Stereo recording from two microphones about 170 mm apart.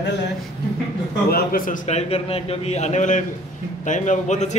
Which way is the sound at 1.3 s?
55° left (ahead or behind).